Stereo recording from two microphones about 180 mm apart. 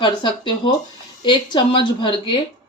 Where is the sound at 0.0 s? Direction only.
25° left (ahead or behind).